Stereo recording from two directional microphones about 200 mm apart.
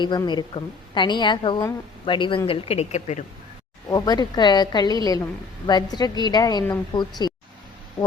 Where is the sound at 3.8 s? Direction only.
20° left (ahead or behind).